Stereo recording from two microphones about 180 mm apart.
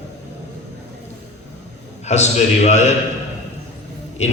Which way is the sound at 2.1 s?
40° left (ahead or behind).